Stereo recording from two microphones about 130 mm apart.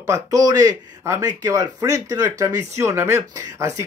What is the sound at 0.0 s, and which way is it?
Speech, 25° right (ahead or behind).